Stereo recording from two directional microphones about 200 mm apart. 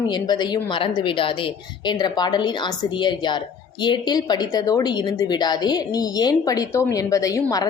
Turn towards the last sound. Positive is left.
turn(degrees=15)  # may be behind; listen again after turning